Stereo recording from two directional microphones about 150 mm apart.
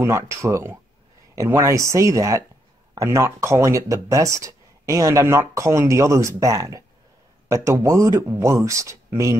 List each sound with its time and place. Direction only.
0.0 s speech: 20° right (ahead or behind)